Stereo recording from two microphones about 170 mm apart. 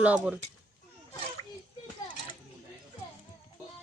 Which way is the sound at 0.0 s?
10° right (ahead or behind).